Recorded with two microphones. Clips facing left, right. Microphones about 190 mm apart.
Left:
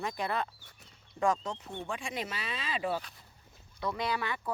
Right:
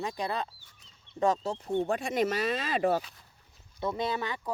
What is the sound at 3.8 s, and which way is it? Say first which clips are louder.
Speech: right 2 dB; 25° right (ahead or behind).